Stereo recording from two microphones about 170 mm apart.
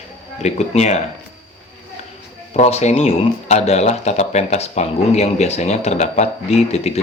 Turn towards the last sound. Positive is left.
turn(degrees=40)  # may be behind; listen again after turning